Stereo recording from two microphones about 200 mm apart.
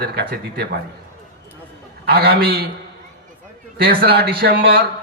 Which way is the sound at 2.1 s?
50° right (ahead or behind).